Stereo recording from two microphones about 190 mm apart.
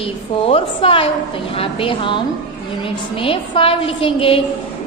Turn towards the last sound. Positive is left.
turn(degrees=30)  # may be behind; listen again after turning